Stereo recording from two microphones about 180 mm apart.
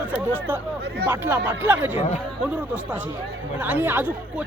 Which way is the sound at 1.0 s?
10° right (ahead or behind).